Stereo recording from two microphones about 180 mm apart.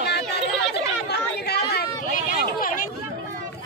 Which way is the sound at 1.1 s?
65° left (ahead or behind).